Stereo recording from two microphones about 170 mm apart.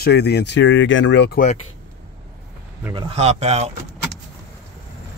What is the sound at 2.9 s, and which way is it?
Speech, 30° right (ahead or behind).